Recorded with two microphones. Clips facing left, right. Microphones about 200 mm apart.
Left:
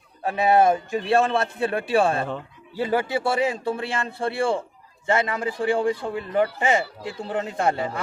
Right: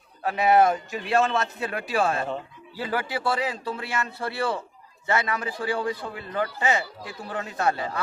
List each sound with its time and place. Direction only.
0.2 s a man's voice: 25° left (ahead or behind)